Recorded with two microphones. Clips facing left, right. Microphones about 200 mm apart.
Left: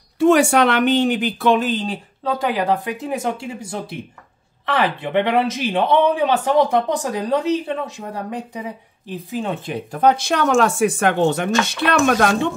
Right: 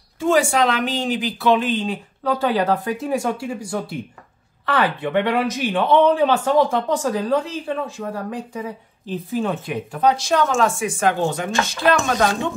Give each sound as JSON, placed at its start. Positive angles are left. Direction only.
{"t": 0.2, "sound": "speech", "side_deg": 65}
{"t": 2.2, "sound": "speech", "side_deg": 15}
{"t": 9.8, "sound": "speech", "side_deg": 50}